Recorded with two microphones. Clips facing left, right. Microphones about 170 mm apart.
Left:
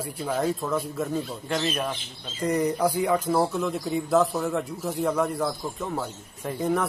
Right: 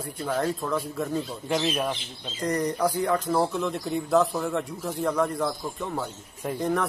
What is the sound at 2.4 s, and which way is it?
Speech, 5° left (ahead or behind).